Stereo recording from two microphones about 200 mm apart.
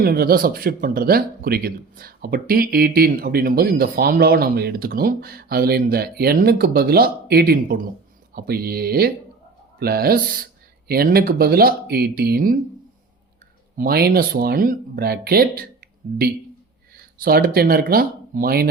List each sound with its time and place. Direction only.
0.0 s speech: 50° right (ahead or behind)
13.7 s speech: 50° right (ahead or behind)
17.0 s speech: 50° right (ahead or behind)